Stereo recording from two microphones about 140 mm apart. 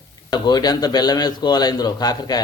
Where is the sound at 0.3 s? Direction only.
30° left (ahead or behind).